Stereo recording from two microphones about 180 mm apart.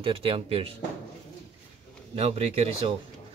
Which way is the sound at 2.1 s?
35° right (ahead or behind).